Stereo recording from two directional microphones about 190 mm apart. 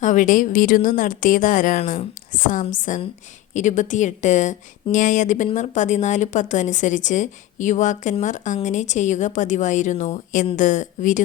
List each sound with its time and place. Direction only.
0.0 s a woman's voice: 40° left (ahead or behind)